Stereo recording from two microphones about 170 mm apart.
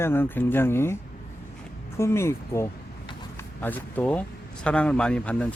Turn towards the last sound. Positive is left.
turn(degrees=5)  # may be behind; listen again after turning